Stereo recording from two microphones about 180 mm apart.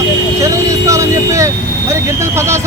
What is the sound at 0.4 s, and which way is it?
Vehicle, 15° right (ahead or behind).